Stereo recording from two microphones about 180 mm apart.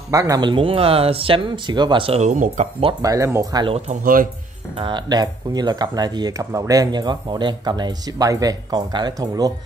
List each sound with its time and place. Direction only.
0.1 s speech: 20° right (ahead or behind); by 2.9 s 40° right (ahead or behind)
2.9 s speech: 20° right (ahead or behind)
3.9 s speech: 50° right (ahead or behind)
4.7 s speech: 25° right (ahead or behind)